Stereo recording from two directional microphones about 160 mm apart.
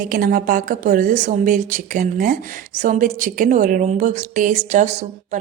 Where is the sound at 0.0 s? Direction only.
65° right (ahead or behind).